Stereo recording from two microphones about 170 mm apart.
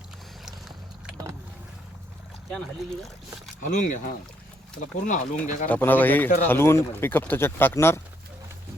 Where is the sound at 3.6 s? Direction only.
50° left (ahead or behind).